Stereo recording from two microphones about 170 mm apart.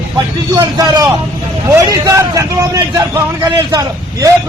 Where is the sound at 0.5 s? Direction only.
25° right (ahead or behind).